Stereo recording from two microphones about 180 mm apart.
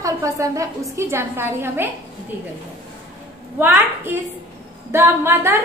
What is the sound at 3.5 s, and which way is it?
A woman's voice, 10° right (ahead or behind).